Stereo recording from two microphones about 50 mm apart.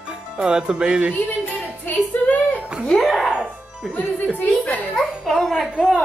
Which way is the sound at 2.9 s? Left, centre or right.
Centre.